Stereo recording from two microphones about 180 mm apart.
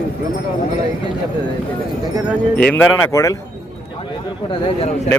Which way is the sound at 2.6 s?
5° left (ahead or behind).